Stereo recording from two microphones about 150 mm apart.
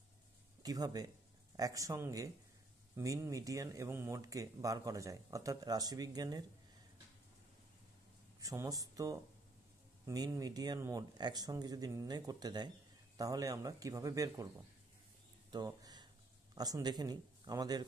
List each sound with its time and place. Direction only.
0.6 s speech: 25° right (ahead or behind)
8.4 s speech: 25° right (ahead or behind)
15.5 s a sound: 25° right (ahead or behind)
16.5 s speech: 25° right (ahead or behind)